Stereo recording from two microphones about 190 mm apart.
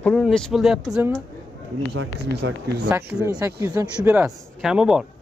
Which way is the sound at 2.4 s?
75° right (ahead or behind).